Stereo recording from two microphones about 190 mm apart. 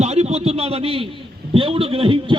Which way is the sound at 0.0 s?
35° right (ahead or behind).